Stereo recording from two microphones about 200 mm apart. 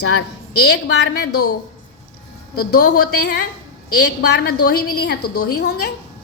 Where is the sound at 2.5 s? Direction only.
50° left (ahead or behind).